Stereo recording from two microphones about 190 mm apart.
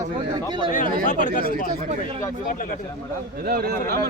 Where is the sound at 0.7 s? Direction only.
40° left (ahead or behind).